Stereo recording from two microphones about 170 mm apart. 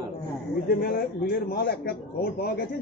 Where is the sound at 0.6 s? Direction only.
65° left (ahead or behind).